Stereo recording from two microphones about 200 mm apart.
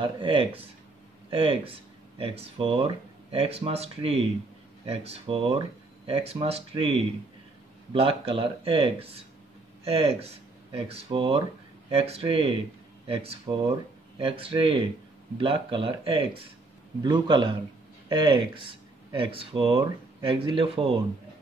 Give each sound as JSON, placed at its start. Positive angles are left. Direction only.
{"t": 0.0, "sound": "speech", "side_deg": -25}